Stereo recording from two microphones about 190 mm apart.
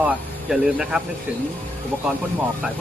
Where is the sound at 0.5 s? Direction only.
5° right (ahead or behind).